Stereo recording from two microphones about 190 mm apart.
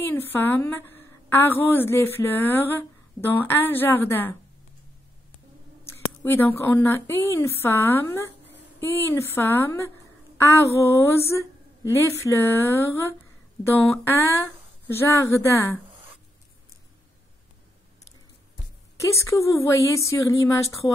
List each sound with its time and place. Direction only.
0.0 s a woman's voice: 10° left (ahead or behind)
6.2 s a woman's voice: 10° left (ahead or behind)
18.9 s a woman's voice: 15° left (ahead or behind)